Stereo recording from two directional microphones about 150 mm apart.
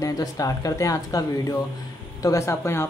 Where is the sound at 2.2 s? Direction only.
20° left (ahead or behind).